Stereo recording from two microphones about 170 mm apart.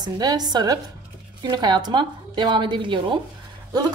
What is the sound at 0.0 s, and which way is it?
A woman's voice, 25° right (ahead or behind).